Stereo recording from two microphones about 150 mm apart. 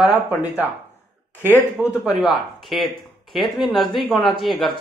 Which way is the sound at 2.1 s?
Centre (ahead or behind).